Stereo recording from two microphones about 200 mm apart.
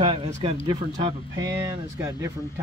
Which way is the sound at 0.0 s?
25° right (ahead or behind).